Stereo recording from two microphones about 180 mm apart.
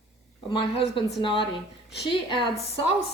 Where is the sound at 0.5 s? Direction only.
30° left (ahead or behind).